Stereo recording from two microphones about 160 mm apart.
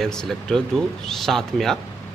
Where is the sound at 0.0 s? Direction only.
5° left (ahead or behind).